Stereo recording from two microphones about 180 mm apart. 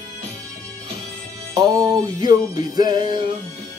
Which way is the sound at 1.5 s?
20° right (ahead or behind).